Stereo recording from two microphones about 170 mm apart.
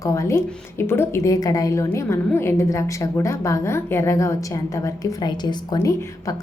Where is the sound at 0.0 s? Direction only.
20° left (ahead or behind).